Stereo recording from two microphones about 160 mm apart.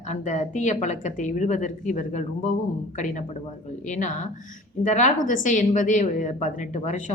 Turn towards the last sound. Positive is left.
turn(degrees=50)  # may be behind; listen again after turning